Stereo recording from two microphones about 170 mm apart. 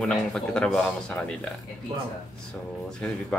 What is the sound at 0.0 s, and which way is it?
Speech, 5° left (ahead or behind).